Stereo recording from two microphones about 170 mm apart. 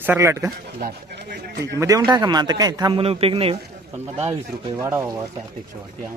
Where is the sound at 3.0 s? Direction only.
35° right (ahead or behind).